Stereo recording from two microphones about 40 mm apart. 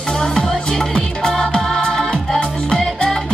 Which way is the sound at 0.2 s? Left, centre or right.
Centre.